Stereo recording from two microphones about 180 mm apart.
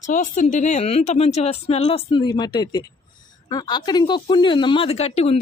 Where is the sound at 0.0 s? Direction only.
45° left (ahead or behind).